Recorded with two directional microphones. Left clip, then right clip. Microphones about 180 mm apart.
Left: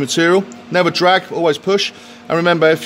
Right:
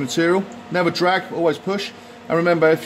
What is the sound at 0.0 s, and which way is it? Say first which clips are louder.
A man's voice: left 5 dB; 45° left (ahead or behind).